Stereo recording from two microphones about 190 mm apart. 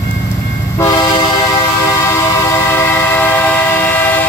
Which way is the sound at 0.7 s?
20° left (ahead or behind).